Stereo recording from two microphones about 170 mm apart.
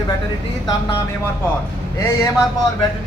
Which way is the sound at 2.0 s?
15° left (ahead or behind).